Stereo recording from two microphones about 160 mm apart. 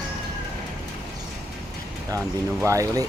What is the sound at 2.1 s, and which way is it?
Speech, 20° right (ahead or behind).